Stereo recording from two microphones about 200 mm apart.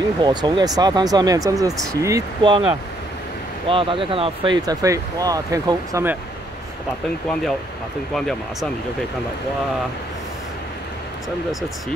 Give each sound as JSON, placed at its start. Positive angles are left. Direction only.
{"t": 0.2, "sound": "speech", "side_deg": -20}
{"t": 8.1, "sound": "speech", "side_deg": 0}